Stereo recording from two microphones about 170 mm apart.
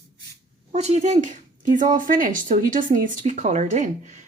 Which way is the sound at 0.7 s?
40° right (ahead or behind).